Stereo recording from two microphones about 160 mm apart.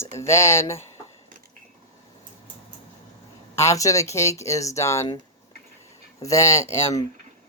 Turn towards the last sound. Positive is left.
turn(degrees=20)  # may be behind; listen again after turning